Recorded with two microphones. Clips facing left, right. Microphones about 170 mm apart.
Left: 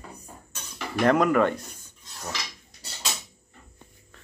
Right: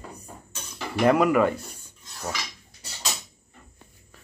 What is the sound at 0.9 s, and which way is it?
Speech, 5° right (ahead or behind).